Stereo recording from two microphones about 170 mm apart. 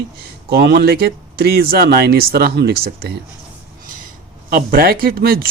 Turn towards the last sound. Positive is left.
turn(degrees=-60)  # may be behind; listen again after turning